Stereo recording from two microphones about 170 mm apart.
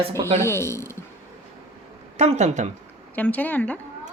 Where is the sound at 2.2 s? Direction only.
40° right (ahead or behind).